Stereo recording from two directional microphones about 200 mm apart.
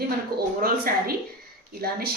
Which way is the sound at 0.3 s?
50° right (ahead or behind).